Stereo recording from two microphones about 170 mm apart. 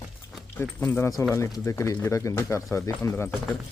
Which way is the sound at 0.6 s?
15° left (ahead or behind).